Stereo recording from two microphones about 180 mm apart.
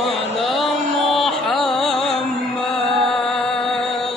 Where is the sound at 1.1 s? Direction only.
Centre (ahead or behind).